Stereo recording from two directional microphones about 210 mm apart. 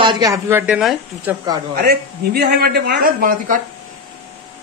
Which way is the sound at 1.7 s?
50° right (ahead or behind).